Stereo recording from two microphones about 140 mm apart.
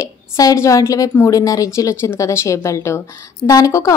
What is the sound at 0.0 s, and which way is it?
A woman's voice, 25° left (ahead or behind).